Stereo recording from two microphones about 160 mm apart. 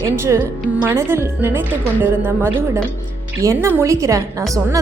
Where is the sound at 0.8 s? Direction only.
15° right (ahead or behind).